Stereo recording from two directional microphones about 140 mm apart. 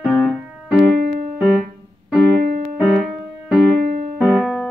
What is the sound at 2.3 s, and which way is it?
Music, 80° right.